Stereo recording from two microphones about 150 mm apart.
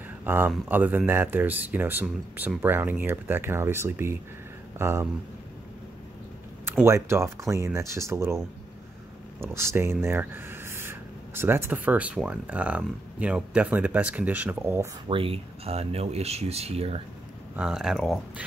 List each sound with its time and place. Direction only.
0.2 s speech: 15° right (ahead or behind)
6.8 s speech: 20° right (ahead or behind)
9.4 s speech: 15° right (ahead or behind)
15.0 s speech: 35° right (ahead or behind)
17.6 s speech: 5° right (ahead or behind)